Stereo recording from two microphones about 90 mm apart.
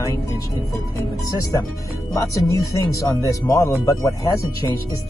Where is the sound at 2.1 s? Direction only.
35° left (ahead or behind).